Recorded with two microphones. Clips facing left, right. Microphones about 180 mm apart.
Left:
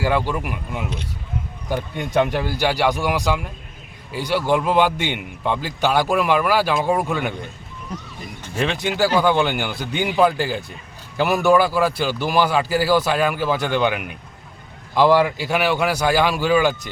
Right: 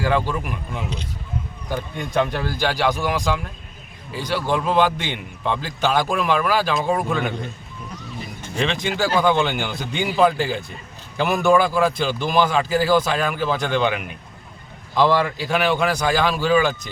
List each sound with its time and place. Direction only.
0.0 s a man's voice: 10° left (ahead or behind)
8.5 s a man's voice: 5° left (ahead or behind)